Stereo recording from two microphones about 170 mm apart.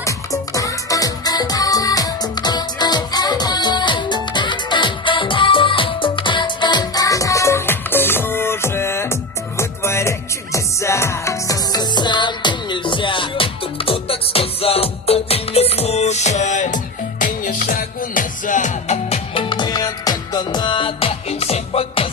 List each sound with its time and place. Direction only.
0.0 s music: 20° left (ahead or behind); by 22.1 s 35° left (ahead or behind)